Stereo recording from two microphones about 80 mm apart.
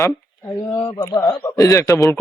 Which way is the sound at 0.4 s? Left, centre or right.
Left.